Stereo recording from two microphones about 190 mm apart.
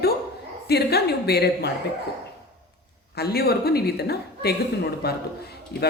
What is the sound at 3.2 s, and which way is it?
Speech, 55° left (ahead or behind).